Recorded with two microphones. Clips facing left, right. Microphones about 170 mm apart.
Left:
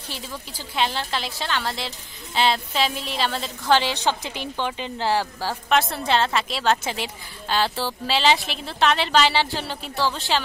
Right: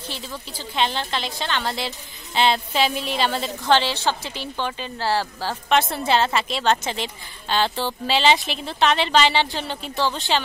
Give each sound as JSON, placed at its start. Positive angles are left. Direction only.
{"t": 0.5, "sound": "a woman's voice", "side_deg": 10}
{"t": 3.7, "sound": "a woman's voice", "side_deg": 15}
{"t": 5.7, "sound": "a woman's voice", "side_deg": 0}